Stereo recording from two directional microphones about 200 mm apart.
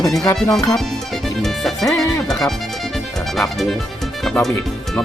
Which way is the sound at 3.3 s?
Centre (ahead or behind).